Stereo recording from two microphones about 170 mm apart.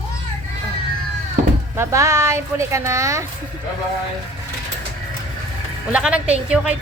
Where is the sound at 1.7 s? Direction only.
15° right (ahead or behind).